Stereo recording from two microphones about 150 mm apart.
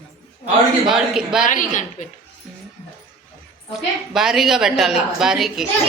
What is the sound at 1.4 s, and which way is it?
Speech, 60° left (ahead or behind).